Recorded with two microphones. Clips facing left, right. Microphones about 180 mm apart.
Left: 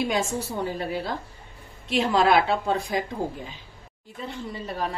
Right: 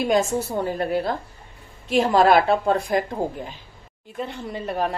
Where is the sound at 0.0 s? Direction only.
50° right (ahead or behind).